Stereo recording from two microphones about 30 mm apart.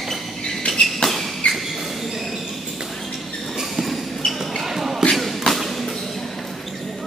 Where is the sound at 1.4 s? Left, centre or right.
Left.